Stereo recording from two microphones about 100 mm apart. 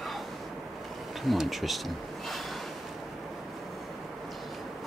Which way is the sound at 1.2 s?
Centre (ahead or behind).